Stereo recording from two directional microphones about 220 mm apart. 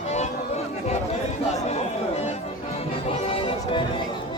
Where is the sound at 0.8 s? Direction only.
30° left (ahead or behind).